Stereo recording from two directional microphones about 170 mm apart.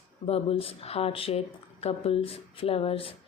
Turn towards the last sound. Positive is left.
turn(degrees=35)  # may be behind; listen again after turning